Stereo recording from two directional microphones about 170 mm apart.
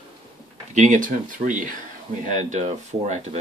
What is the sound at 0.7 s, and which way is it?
Speech, 50° right (ahead or behind).